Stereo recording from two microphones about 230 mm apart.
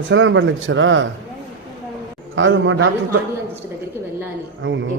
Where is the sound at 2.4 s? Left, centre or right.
Right.